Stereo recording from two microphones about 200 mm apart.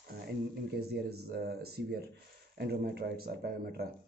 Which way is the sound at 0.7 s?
50° right (ahead or behind).